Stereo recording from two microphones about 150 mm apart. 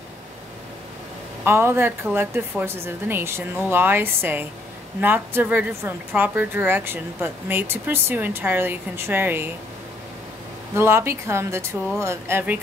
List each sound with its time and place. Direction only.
1.4 s a woman's voice: 15° right (ahead or behind)
10.7 s a woman's voice: 15° right (ahead or behind)